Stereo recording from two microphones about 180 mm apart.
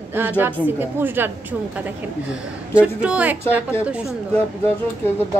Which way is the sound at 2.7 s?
5° right (ahead or behind).